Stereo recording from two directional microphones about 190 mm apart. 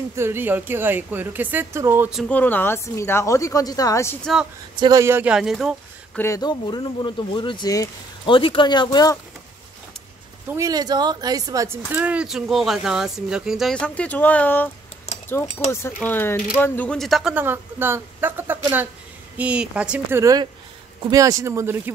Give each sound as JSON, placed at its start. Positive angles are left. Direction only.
{"t": 0.1, "sound": "a woman's voice", "side_deg": -15}
{"t": 4.7, "sound": "speech", "side_deg": -20}
{"t": 6.1, "sound": "speech", "side_deg": 15}
{"t": 10.5, "sound": "a woman's voice", "side_deg": -20}
{"t": 15.7, "sound": "speech", "side_deg": 10}